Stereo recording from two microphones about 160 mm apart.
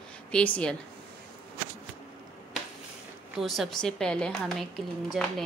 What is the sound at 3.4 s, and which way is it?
A woman's voice, centre (ahead or behind).